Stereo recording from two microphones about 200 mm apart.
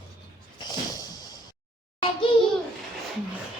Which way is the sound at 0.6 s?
20° left (ahead or behind).